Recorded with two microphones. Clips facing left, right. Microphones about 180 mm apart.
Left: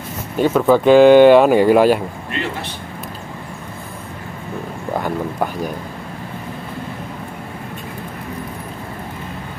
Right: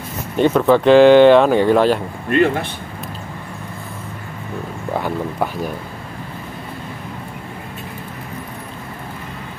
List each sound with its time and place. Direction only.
0.4 s speech: 5° left (ahead or behind)
2.2 s a man's voice: 55° right (ahead or behind)
4.9 s speech: centre (ahead or behind)